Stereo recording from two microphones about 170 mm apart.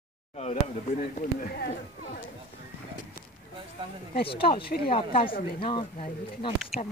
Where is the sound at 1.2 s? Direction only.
60° left (ahead or behind).